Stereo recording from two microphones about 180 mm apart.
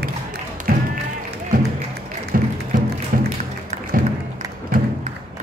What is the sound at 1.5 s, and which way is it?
Music, 50° right (ahead or behind).